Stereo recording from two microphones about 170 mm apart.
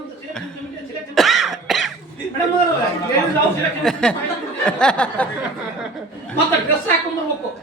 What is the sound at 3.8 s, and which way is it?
Speech, 5° left (ahead or behind).